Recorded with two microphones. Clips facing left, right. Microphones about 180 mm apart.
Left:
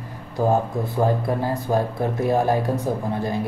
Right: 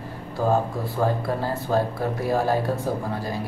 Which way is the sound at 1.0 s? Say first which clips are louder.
Left 2 dB; 15° left (ahead or behind).